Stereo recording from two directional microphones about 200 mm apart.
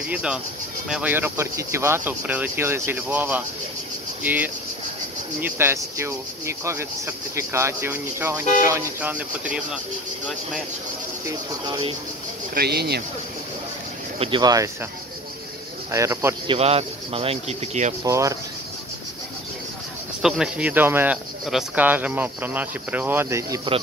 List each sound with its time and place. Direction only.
0.1 s speech: 5° right (ahead or behind)
11.2 s speech: 20° right (ahead or behind)
12.5 s speech: 55° right (ahead or behind)
14.2 s speech: 20° right (ahead or behind)
15.9 s speech: 15° right (ahead or behind)
16.4 s speech: 30° right (ahead or behind)
18.0 s speech: 15° right (ahead or behind)
20.2 s speech: 5° right (ahead or behind)